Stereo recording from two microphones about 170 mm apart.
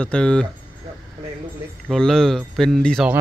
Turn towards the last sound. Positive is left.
turn(degrees=0)  # may be behind; listen again after turning